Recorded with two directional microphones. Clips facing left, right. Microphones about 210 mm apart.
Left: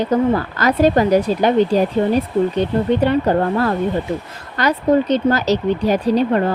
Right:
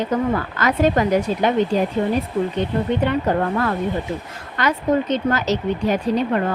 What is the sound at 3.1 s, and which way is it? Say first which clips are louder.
Speech: left 4 dB; 35° left (ahead or behind).